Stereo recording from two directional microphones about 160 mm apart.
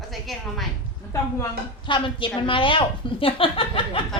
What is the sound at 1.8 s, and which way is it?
A woman's voice, 30° left (ahead or behind).